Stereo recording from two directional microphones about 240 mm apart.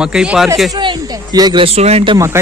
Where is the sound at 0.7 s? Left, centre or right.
Centre.